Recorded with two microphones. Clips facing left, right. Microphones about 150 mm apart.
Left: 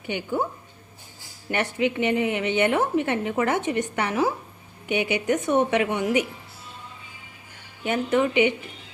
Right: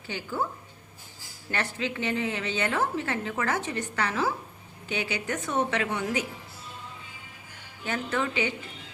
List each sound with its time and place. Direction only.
0.1 s a woman's voice: 20° left (ahead or behind)
1.5 s a woman's voice: 20° left (ahead or behind)
7.9 s a woman's voice: 20° left (ahead or behind)